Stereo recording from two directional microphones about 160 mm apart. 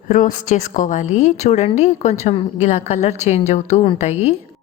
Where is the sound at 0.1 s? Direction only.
55° left (ahead or behind).